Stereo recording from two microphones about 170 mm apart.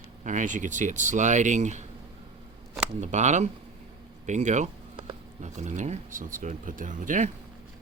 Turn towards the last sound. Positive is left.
turn(degrees=-50)  # may be behind; listen again after turning